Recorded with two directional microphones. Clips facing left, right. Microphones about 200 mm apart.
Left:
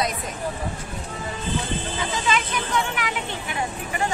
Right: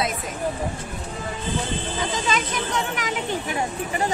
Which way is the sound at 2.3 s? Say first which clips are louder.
Even; 40° right (ahead or behind).